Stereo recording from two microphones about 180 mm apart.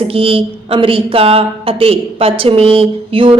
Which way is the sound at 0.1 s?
30° right (ahead or behind).